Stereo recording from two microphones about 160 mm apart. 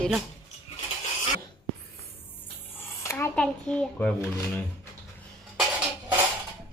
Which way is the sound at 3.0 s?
15° left (ahead or behind).